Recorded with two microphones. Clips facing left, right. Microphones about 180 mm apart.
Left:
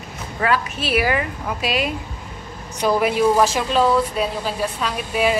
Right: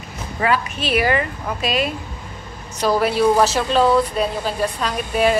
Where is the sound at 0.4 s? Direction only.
Centre (ahead or behind).